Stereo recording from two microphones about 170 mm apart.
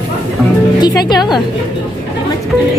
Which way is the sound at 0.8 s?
25° left (ahead or behind).